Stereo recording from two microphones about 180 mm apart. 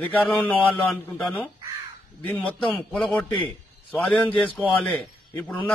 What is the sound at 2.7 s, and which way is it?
A man's voice, 5° left (ahead or behind).